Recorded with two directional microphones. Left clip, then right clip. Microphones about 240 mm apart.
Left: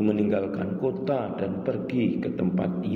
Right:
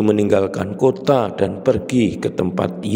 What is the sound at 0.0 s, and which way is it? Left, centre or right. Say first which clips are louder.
A man's voice: right 10 dB; right.